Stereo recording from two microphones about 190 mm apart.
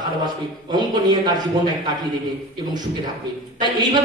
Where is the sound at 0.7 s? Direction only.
20° right (ahead or behind).